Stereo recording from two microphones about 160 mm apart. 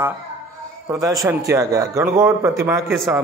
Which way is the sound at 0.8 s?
20° right (ahead or behind).